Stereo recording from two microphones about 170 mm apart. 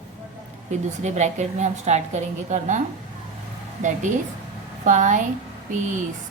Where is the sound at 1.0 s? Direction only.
45° right (ahead or behind).